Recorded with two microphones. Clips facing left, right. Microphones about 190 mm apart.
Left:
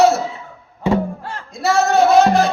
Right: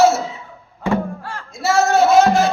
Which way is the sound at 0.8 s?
20° left (ahead or behind).